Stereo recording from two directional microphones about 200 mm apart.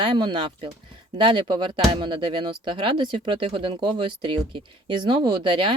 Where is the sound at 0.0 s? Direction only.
25° right (ahead or behind).